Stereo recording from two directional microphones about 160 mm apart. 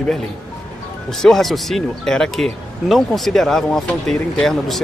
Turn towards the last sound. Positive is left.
turn(degrees=0)  # may be behind; listen again after turning